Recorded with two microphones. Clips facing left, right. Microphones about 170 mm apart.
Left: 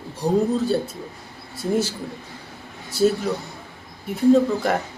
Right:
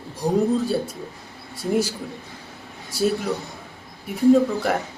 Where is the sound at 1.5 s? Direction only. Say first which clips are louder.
Even; 10° right (ahead or behind).